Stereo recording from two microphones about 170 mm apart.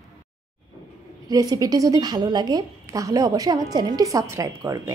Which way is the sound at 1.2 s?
20° right (ahead or behind).